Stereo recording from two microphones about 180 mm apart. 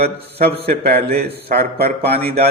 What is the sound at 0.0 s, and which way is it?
A man's voice, 65° right (ahead or behind).